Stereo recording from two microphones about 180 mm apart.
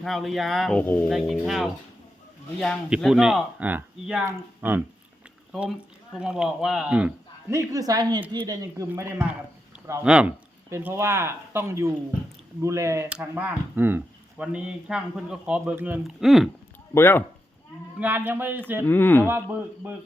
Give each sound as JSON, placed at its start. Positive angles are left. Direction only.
{"t": 0.0, "sound": "speech", "side_deg": 0}
{"t": 7.5, "sound": "a woman's voice", "side_deg": -20}
{"t": 16.9, "sound": "speech", "side_deg": 15}
{"t": 18.0, "sound": "speech", "side_deg": -10}
{"t": 18.9, "sound": "speech", "side_deg": 10}
{"t": 19.8, "sound": "speech", "side_deg": -10}